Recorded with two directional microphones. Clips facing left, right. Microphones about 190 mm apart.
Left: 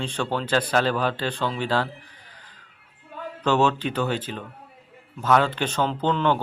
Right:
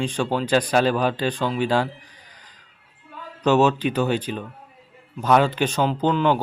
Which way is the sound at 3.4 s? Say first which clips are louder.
Right 4 dB; 15° right (ahead or behind).